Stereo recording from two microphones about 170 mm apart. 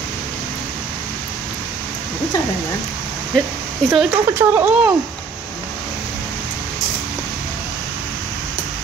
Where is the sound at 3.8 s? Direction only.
5° left (ahead or behind).